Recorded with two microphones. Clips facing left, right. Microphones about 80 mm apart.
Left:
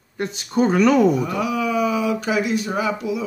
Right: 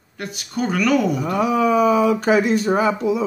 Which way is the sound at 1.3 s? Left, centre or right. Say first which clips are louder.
Right 4 dB; right.